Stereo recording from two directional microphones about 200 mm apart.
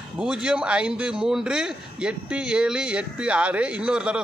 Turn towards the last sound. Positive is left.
turn(degrees=-5)  # may be behind; listen again after turning